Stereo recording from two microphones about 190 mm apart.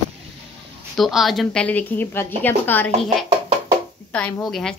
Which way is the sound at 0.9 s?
Centre (ahead or behind).